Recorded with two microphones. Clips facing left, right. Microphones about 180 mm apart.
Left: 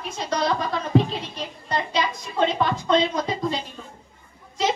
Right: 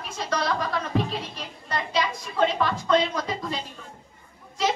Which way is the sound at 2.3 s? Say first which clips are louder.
Left 1 dB; 25° left (ahead or behind).